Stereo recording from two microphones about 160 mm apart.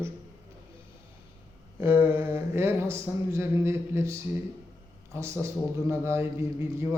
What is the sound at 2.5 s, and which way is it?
A man's voice, 15° right (ahead or behind).